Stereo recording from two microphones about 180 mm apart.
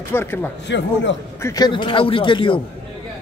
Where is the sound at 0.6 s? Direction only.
80° left.